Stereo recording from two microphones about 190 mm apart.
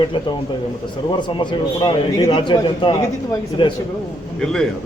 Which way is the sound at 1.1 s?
25° left (ahead or behind).